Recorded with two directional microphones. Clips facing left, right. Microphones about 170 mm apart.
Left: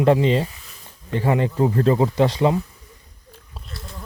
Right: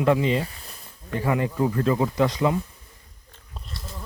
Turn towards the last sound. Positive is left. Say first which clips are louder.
# left 1 dB
turn(degrees=0)  # may be behind; listen again after turning